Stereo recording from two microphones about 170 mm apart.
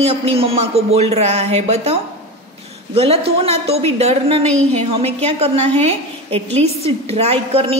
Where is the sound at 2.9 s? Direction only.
35° right (ahead or behind).